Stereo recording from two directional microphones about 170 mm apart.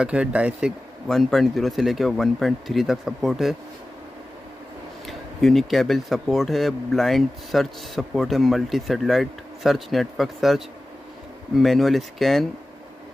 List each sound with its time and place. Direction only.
0.0 s speech: 5° right (ahead or behind)
5.0 s speech: centre (ahead or behind)
11.6 s speech: centre (ahead or behind)